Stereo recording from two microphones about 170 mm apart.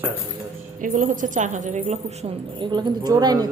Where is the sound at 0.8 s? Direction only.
50° right (ahead or behind).